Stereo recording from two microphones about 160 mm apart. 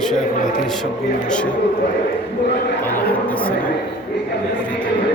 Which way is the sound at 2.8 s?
10° left (ahead or behind).